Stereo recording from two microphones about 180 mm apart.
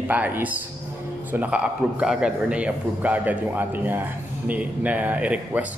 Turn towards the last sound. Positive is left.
turn(degrees=-5)  # may be behind; listen again after turning